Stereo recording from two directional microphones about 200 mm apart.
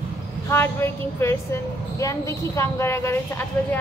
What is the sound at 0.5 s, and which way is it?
A woman's voice, 10° left (ahead or behind).